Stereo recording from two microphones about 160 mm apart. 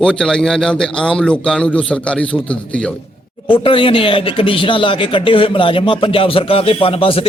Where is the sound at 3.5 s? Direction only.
35° left (ahead or behind).